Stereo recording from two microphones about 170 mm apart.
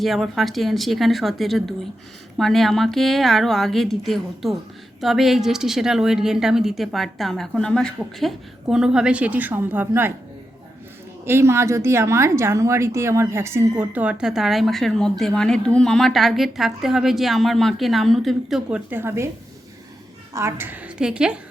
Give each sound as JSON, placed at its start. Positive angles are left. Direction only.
{"t": 0.0, "sound": "speech", "side_deg": 0}
{"t": 11.3, "sound": "a woman's voice", "side_deg": -15}
{"t": 20.3, "sound": "a woman's voice", "side_deg": -15}